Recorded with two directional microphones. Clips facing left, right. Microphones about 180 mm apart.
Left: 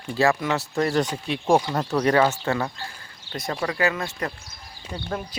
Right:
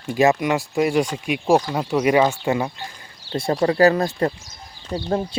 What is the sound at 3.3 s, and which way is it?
Speech, 30° right (ahead or behind).